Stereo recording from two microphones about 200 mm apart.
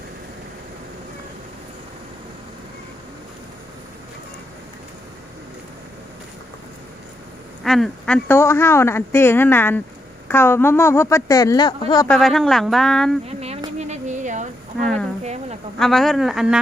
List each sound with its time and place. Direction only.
7.6 s a man's voice: centre (ahead or behind); by 12.0 s 20° left (ahead or behind)
12.0 s speech: centre (ahead or behind)
13.2 s a sound: 30° right (ahead or behind)
14.8 s a woman's voice: centre (ahead or behind)
15.2 s a sound: 35° right (ahead or behind)
15.8 s speech: centre (ahead or behind)